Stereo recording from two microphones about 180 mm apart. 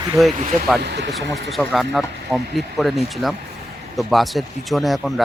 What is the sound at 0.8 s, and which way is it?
Speech, 70° right (ahead or behind).